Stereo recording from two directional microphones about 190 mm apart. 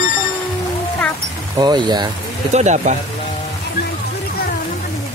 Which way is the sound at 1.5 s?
20° right (ahead or behind).